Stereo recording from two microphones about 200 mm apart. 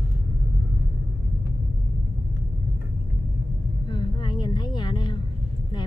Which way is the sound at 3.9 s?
20° left (ahead or behind).